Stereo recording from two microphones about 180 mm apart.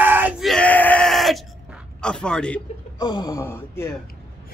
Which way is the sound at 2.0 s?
5° left (ahead or behind).